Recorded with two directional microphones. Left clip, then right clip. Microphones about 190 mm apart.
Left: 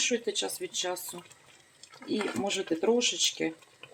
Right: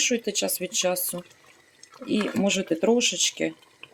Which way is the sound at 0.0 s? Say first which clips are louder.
Right 4 dB; 45° right (ahead or behind).